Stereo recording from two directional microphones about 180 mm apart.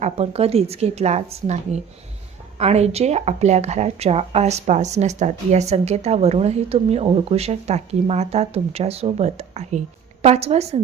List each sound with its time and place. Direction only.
0.0 s speech: 35° right (ahead or behind)